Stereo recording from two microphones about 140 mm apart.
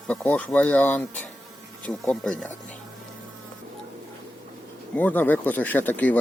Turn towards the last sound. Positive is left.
turn(degrees=10)  # may be behind; listen again after turning